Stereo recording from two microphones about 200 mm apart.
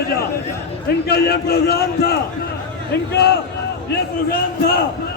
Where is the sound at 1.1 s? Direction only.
55° left (ahead or behind).